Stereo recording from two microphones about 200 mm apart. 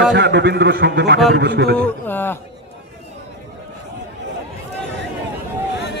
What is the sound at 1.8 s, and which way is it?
Speech, 10° left (ahead or behind).